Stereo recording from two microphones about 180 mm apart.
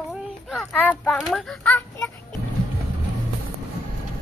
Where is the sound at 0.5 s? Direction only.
Centre (ahead or behind).